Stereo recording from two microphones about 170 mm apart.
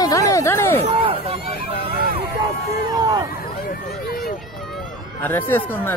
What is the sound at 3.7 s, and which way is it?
Speech, 60° left (ahead or behind).